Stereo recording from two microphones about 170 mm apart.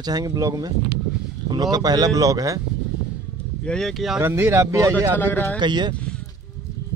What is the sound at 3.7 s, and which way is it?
Speech, centre (ahead or behind).